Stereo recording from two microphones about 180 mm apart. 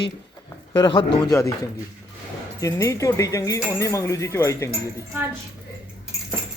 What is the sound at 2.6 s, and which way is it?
Speech, 15° left (ahead or behind).